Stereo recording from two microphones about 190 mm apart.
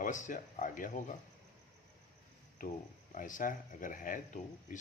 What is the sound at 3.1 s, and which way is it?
Speech, 45° left (ahead or behind).